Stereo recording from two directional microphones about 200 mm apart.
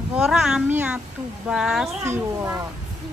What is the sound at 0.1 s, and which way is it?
Speech, 5° right (ahead or behind).